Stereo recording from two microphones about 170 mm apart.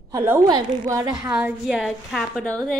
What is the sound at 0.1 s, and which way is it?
A woman's voice, 15° right (ahead or behind).